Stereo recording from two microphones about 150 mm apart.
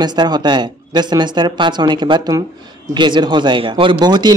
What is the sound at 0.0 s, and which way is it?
Speech, 30° right (ahead or behind).